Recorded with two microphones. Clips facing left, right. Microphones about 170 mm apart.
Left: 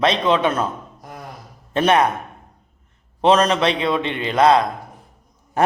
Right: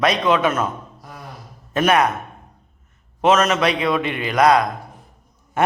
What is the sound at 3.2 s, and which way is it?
A man's voice, 35° left (ahead or behind).